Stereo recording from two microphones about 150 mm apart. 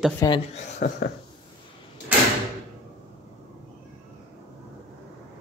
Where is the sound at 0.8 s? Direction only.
90° left.